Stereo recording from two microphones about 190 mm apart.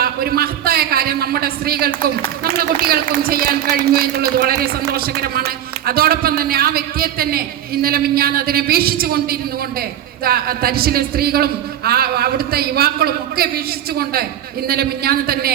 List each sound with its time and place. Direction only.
0.0 s a man's voice: 55° right (ahead or behind)